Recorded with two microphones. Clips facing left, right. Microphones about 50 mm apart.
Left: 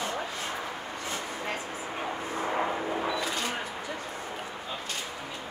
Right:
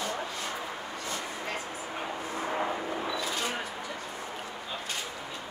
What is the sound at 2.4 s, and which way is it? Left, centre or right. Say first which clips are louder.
Vehicle: left 2 dB; centre.